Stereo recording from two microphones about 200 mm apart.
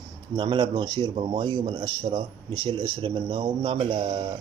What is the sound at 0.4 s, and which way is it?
Speech, 25° right (ahead or behind).